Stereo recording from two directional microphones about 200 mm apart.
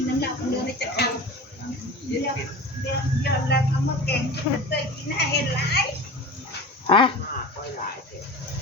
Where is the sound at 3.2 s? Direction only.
55° left (ahead or behind).